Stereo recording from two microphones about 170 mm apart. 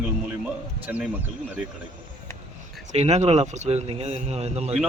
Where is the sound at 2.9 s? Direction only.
40° right (ahead or behind).